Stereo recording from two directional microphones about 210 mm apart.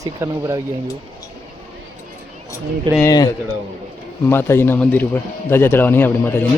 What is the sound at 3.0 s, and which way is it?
Speech, 15° left (ahead or behind).